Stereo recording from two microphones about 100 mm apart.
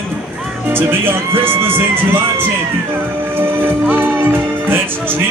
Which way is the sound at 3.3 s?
20° right (ahead or behind).